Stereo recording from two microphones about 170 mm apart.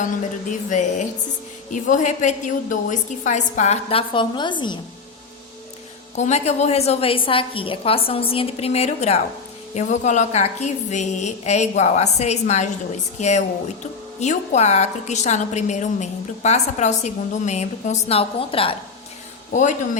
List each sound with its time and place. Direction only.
0.7 s a woman's voice: 45° left (ahead or behind); by 4.8 s 25° left (ahead or behind)
6.1 s a woman's voice: 40° left (ahead or behind)
19.5 s a woman's voice: 45° left (ahead or behind)